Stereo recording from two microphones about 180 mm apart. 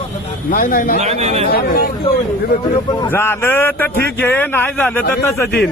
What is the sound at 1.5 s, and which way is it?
Speech, 60° left (ahead or behind).